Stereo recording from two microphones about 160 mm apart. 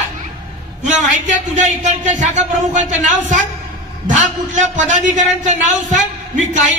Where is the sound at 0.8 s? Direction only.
50° right (ahead or behind).